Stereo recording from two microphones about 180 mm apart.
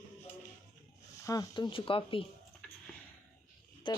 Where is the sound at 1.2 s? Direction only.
20° left (ahead or behind).